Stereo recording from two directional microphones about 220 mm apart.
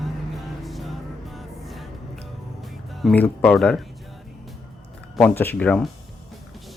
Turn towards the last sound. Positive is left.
turn(degrees=5)  # may be behind; listen again after turning